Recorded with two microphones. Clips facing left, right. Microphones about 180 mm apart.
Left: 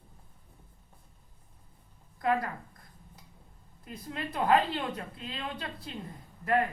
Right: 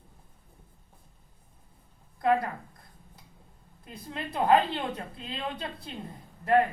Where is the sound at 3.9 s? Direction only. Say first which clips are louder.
Even; 30° right (ahead or behind).